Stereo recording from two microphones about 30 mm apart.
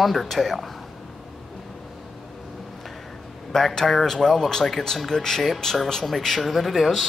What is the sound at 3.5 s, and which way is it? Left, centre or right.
Speech, centre.